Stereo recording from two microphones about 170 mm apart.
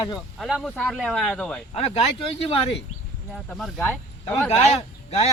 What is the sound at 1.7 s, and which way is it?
Speech, 35° left (ahead or behind).